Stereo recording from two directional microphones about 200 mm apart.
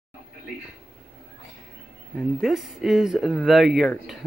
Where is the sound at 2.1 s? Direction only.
Centre (ahead or behind).